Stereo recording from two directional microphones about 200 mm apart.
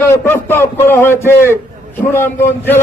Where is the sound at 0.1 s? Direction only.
10° left (ahead or behind).